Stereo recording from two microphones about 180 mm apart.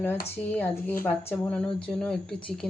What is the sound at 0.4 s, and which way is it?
Speech, 10° left (ahead or behind).